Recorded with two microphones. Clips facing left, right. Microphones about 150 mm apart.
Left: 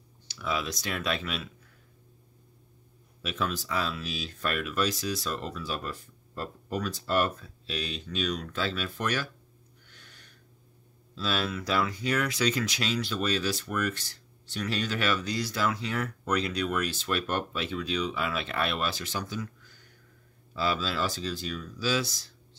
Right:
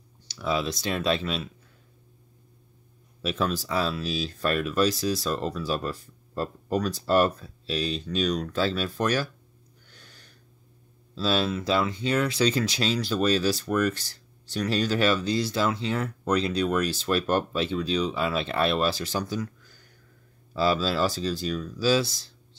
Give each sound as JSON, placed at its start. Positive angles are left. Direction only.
{"t": 0.3, "sound": "speech", "side_deg": -30}
{"t": 3.2, "sound": "speech", "side_deg": -35}
{"t": 9.8, "sound": "a sound", "side_deg": -35}
{"t": 11.1, "sound": "speech", "side_deg": -30}
{"t": 20.5, "sound": "speech", "side_deg": -35}